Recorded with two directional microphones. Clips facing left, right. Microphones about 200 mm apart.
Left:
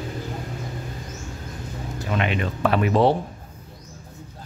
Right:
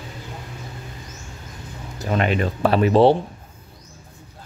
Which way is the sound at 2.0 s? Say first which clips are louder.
Right 4 dB; 40° right (ahead or behind).